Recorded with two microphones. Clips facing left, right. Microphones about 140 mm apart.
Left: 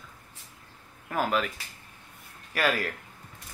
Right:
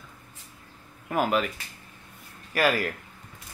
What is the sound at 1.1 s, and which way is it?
Speech, 10° right (ahead or behind).